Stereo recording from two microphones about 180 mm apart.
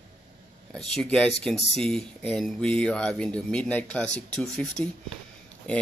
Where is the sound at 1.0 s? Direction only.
5° left (ahead or behind).